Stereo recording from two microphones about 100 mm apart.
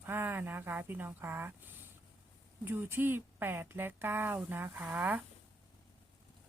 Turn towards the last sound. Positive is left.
turn(degrees=-15)  # may be behind; listen again after turning